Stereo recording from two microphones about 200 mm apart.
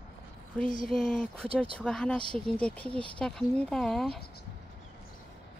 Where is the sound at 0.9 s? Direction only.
5° left (ahead or behind).